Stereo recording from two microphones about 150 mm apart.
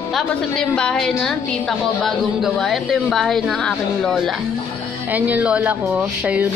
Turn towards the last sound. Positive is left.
turn(degrees=-10)  # may be behind; listen again after turning